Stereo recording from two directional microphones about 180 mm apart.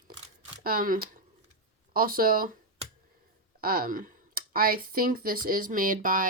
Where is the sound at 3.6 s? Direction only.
55° right (ahead or behind).